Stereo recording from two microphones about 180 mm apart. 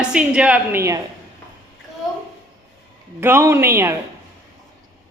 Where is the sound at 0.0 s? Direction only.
5° right (ahead or behind).